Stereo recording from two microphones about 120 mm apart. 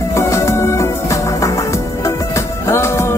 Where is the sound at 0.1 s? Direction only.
25° left (ahead or behind).